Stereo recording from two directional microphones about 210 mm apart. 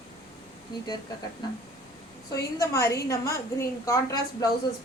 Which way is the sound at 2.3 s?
15° left (ahead or behind).